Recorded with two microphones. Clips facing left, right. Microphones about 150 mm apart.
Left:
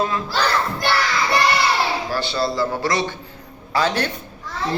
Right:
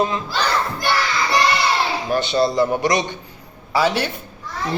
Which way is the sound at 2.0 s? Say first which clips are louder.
Right 4 dB; 20° right (ahead or behind).